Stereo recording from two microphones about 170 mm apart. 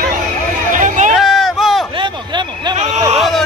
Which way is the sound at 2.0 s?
25° right (ahead or behind).